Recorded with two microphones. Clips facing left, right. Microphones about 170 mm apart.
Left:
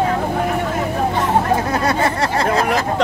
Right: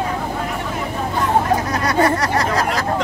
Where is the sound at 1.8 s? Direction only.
25° left (ahead or behind).